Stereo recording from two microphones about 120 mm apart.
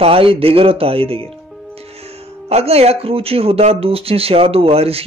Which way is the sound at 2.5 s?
60° right (ahead or behind).